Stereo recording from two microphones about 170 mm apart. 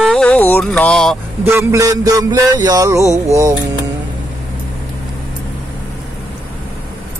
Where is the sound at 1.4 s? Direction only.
15° right (ahead or behind).